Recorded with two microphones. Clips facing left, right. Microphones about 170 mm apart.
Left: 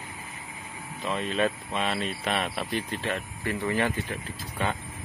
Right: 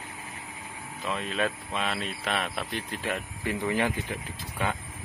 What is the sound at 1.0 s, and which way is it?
Speech, centre (ahead or behind).